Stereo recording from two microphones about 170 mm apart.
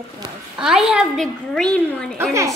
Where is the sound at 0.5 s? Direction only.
5° right (ahead or behind).